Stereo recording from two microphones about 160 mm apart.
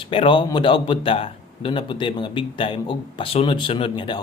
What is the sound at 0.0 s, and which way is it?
Speech, 35° left (ahead or behind).